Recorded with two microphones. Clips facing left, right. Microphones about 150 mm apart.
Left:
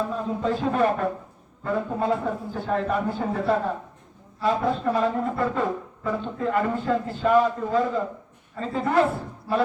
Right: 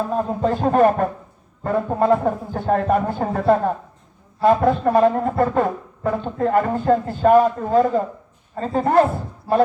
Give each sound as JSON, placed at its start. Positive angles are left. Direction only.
{"t": 0.2, "sound": "speech", "side_deg": -50}